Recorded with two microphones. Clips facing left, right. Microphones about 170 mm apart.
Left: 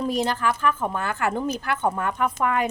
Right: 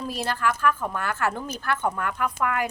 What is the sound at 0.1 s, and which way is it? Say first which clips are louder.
A woman's voice: left 3 dB; 20° left (ahead or behind).